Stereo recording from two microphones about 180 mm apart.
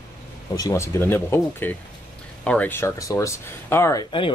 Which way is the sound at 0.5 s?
20° left (ahead or behind).